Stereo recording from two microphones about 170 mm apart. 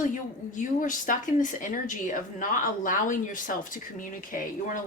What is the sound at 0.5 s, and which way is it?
Speech, 50° left (ahead or behind).